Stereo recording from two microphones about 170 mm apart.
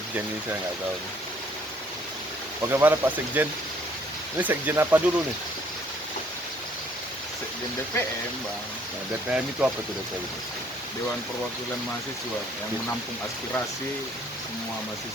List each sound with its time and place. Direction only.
2.8 s speech: 10° right (ahead or behind)
7.9 s speech: 15° left (ahead or behind)
9.3 s speech: 5° right (ahead or behind)